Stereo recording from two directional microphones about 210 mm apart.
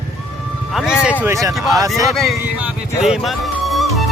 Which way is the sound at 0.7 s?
5° right (ahead or behind).